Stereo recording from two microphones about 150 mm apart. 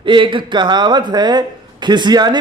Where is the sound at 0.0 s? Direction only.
35° right (ahead or behind).